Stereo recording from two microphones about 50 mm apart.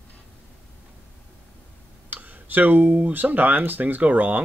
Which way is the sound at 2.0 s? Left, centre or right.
Right.